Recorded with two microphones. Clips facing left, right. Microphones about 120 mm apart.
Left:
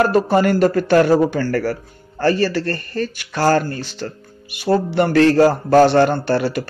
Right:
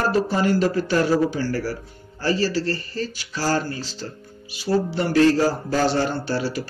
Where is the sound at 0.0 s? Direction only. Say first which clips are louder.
Left 6 dB; 60° left (ahead or behind).